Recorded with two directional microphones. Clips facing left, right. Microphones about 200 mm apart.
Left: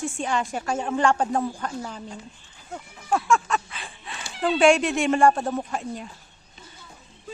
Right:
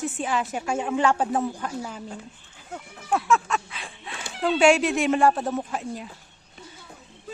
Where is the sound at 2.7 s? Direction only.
Centre (ahead or behind).